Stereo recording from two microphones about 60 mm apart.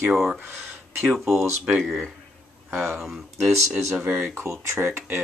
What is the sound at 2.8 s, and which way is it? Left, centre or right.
Speech, centre.